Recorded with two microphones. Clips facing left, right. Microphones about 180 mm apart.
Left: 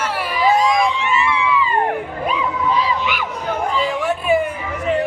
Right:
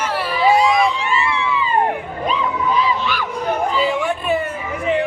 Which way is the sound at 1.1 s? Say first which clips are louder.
Left 2 dB; 25° right (ahead or behind).